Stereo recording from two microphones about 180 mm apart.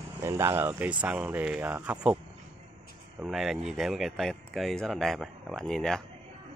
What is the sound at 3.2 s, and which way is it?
Speech, centre (ahead or behind).